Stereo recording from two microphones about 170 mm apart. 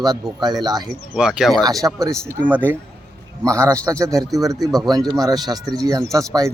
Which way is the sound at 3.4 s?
20° right (ahead or behind).